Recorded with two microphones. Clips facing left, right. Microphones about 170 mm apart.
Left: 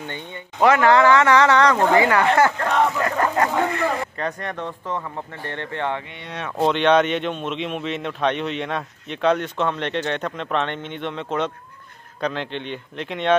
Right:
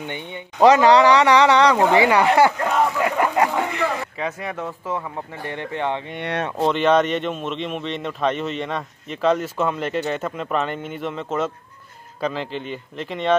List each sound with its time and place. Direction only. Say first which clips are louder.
0.0 s speech: right 2 dB; 15° right (ahead or behind)
4.2 s speech: even; 5° right (ahead or behind)
6.1 s speech: right 8 dB; 60° right (ahead or behind)
6.6 s speech: left 1 dB; centre (ahead or behind)